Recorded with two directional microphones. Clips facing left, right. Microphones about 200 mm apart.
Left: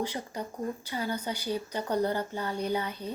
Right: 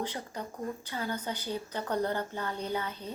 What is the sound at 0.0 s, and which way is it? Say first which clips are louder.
Speech: left 3 dB; 10° left (ahead or behind).